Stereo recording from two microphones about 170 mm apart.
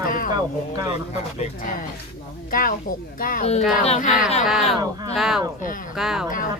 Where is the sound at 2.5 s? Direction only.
55° left (ahead or behind).